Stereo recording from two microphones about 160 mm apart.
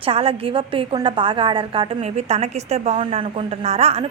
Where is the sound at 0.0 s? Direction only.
35° right (ahead or behind).